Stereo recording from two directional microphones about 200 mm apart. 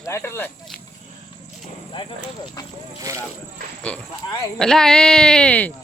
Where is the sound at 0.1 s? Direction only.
10° left (ahead or behind).